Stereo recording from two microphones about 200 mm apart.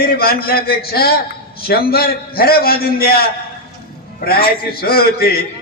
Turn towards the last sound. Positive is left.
turn(degrees=50)  # may be behind; listen again after turning